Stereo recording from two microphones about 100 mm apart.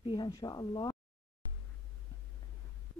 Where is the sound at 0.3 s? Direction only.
40° left (ahead or behind).